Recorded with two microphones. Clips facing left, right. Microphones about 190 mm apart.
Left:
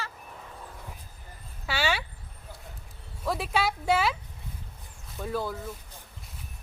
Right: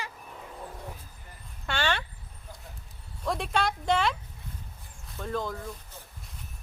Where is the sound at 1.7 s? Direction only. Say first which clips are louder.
Left 1 dB; 5° left (ahead or behind).